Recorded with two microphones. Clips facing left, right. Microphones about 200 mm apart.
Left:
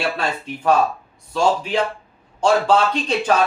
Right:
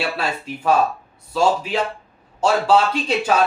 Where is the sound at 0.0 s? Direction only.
5° right (ahead or behind).